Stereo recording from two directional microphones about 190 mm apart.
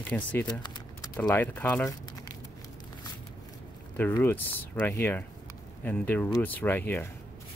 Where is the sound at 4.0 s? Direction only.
10° left (ahead or behind).